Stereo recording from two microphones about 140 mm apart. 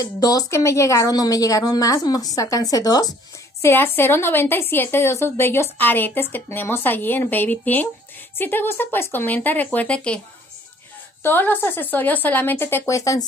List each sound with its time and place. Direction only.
0.0 s a woman's voice: 25° left (ahead or behind)
3.6 s a woman's voice: 15° left (ahead or behind)
11.2 s a woman's voice: 15° left (ahead or behind)